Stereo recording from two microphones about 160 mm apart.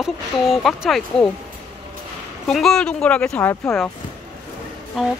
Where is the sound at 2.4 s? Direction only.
5° left (ahead or behind).